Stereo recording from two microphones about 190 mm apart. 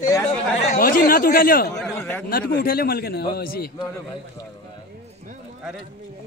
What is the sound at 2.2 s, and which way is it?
A man's voice, 50° left (ahead or behind).